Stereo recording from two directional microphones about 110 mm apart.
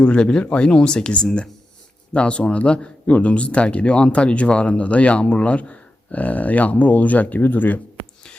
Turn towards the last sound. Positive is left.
turn(degrees=15)  # may be behind; listen again after turning